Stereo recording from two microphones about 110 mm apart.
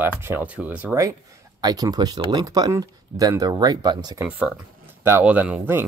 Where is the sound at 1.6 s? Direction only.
35° right (ahead or behind).